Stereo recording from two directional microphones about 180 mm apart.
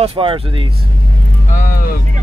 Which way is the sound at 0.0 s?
30° right (ahead or behind).